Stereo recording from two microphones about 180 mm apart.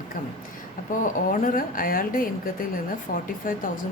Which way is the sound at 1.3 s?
50° left (ahead or behind).